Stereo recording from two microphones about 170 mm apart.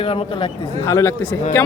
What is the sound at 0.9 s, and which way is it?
Speech, 15° left (ahead or behind).